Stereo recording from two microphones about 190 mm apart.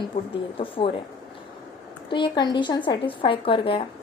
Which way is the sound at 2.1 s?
25° left (ahead or behind).